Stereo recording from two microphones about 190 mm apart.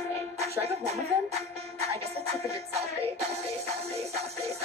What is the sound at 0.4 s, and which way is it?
Music, 35° right (ahead or behind).